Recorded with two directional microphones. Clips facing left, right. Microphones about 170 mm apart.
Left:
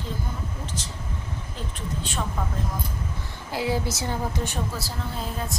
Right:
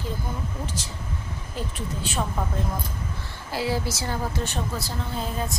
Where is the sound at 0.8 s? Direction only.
10° right (ahead or behind).